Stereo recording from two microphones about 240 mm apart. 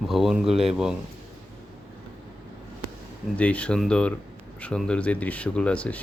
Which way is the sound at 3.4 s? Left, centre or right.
Centre.